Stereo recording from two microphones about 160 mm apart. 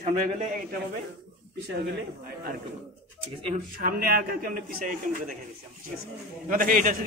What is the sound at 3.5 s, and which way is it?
A man's voice, 65° right (ahead or behind).